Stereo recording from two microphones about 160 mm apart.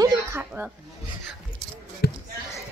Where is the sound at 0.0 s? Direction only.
20° right (ahead or behind).